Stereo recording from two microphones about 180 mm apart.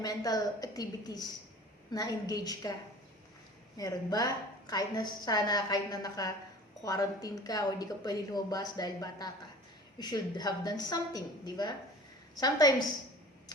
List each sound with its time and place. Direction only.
0.0 s a woman's voice: 20° left (ahead or behind)
3.8 s a woman's voice: 20° left (ahead or behind)